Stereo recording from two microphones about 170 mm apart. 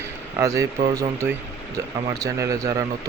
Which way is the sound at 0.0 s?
15° right (ahead or behind).